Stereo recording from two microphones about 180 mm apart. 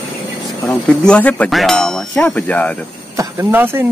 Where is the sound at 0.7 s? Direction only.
5° left (ahead or behind).